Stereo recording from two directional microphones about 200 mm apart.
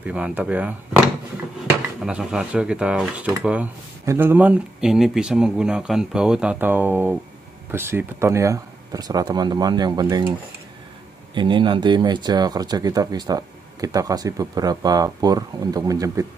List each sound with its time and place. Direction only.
0.0 s speech: 5° right (ahead or behind)
11.3 s speech: 25° right (ahead or behind)